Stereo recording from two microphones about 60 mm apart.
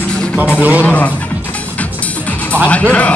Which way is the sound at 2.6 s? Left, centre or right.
Left.